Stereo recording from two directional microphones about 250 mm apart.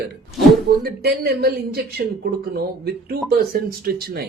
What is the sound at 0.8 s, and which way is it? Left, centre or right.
Speech, right.